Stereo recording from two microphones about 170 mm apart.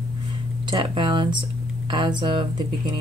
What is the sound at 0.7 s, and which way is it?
Speech, 25° right (ahead or behind).